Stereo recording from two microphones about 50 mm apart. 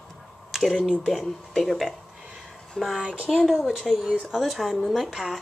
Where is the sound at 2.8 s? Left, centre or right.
Centre.